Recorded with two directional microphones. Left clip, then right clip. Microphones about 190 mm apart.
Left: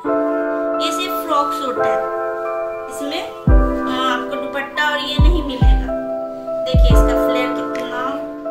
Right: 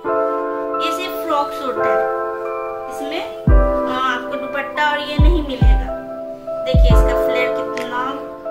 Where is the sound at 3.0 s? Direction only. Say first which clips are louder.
Left 1 dB; centre (ahead or behind).